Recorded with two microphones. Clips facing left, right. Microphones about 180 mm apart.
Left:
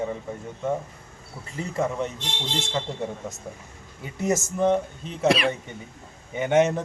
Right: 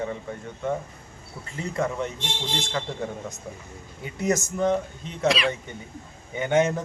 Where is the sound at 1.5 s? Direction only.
5° left (ahead or behind).